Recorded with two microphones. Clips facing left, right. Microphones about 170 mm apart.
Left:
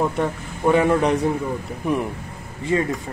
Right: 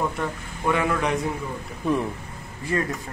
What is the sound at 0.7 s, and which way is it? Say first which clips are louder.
Speech: left 6 dB; 30° left (ahead or behind).